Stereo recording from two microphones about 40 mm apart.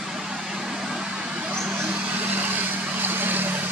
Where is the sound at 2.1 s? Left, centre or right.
Right.